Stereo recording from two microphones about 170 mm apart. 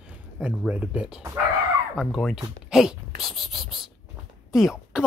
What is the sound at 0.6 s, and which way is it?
Speech, 10° right (ahead or behind).